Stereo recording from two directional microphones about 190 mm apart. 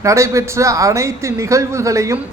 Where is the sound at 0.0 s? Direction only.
15° right (ahead or behind).